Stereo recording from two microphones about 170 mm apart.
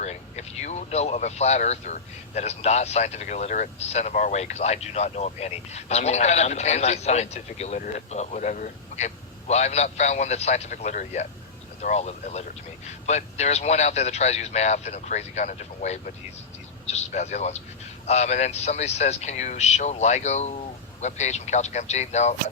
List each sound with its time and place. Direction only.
0.0 s speech: 40° left (ahead or behind)